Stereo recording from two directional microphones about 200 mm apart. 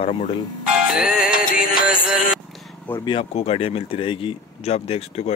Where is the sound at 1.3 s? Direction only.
45° left (ahead or behind).